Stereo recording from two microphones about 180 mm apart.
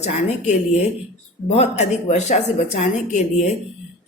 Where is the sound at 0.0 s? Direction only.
40° left (ahead or behind).